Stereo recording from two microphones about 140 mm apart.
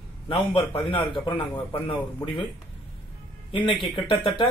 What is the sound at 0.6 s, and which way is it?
Speech, 35° left (ahead or behind).